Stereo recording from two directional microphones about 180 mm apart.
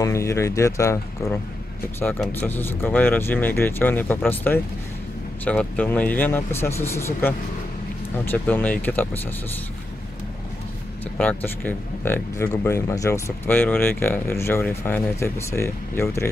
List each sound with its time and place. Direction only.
0.0 s speech: 15° left (ahead or behind)
11.1 s speech: 10° left (ahead or behind)